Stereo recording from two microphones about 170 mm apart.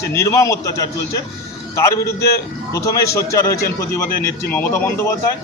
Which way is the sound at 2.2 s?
65° left (ahead or behind).